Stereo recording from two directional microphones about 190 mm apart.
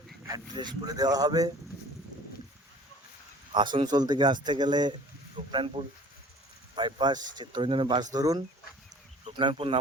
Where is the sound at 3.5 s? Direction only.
25° right (ahead or behind).